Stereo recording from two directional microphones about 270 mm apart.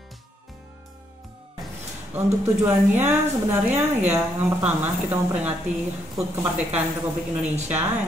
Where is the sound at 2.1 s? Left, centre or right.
Centre.